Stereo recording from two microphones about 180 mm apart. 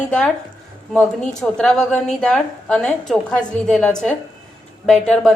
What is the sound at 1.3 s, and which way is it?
A woman's voice, 5° left (ahead or behind).